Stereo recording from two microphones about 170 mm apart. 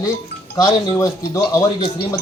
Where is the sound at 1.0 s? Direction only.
20° left (ahead or behind).